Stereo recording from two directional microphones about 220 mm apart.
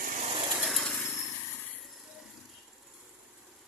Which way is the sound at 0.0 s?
30° right (ahead or behind).